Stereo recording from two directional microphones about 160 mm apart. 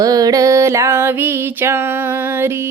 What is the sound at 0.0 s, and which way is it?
Music, 25° right (ahead or behind).